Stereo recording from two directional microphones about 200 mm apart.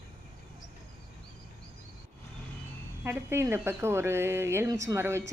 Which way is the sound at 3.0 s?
10° right (ahead or behind).